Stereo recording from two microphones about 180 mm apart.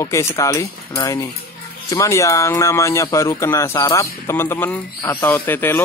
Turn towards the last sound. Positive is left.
turn(degrees=10)  # may be behind; listen again after turning